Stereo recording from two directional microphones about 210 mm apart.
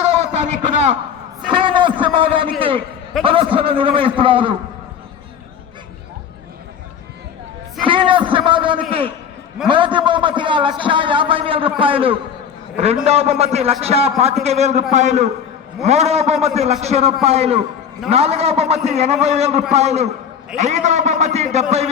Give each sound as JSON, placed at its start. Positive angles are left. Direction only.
{"t": 0.0, "sound": "a sound", "side_deg": -30}
{"t": 1.5, "sound": "a man's voice", "side_deg": -25}
{"t": 7.9, "sound": "a man's voice", "side_deg": -25}